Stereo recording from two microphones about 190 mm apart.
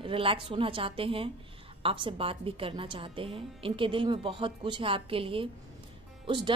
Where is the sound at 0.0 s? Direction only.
30° right (ahead or behind).